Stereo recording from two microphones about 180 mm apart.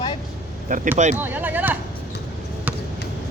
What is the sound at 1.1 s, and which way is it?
Speech, 10° right (ahead or behind).